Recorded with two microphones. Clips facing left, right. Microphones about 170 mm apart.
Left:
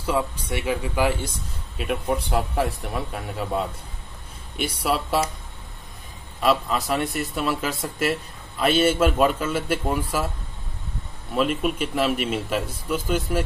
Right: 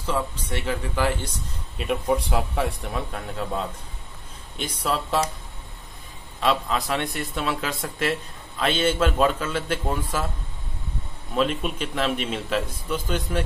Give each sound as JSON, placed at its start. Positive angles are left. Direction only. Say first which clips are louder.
{"t": 0.0, "sound": "a man's voice", "louder": "left 2 dB", "side_deg": 10}
{"t": 6.4, "sound": "a man's voice", "louder": "left 2 dB", "side_deg": 5}
{"t": 11.3, "sound": "a man's voice", "louder": "left 2 dB", "side_deg": 5}